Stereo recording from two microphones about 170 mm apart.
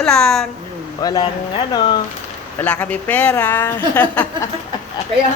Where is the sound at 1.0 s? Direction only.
25° left (ahead or behind).